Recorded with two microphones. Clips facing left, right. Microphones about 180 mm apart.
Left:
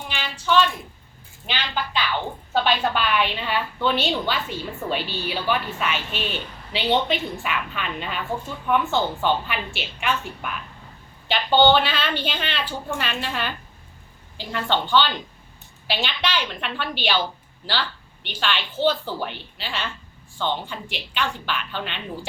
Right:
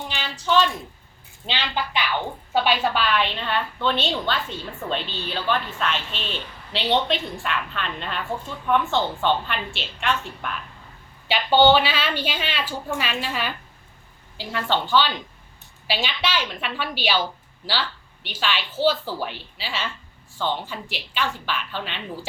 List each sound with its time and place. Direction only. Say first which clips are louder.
0.1 s a sound: left 1 dB; 35° right (ahead or behind)
1.5 s a man's voice: right 1 dB; 20° right (ahead or behind)
2.5 s a woman's voice: even; 10° right (ahead or behind)
11.3 s a woman's voice: right 1 dB; 10° right (ahead or behind)
18.3 s a woman's voice: even; 5° right (ahead or behind)